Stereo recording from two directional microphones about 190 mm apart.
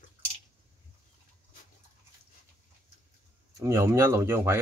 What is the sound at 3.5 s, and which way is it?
Speech, 15° right (ahead or behind).